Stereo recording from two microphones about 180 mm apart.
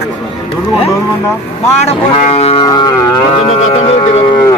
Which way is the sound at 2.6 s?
25° left (ahead or behind).